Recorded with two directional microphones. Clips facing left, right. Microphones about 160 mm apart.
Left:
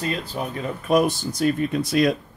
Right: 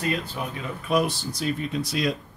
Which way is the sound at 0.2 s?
40° left (ahead or behind).